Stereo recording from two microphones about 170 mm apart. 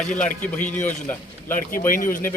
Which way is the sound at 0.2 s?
10° left (ahead or behind).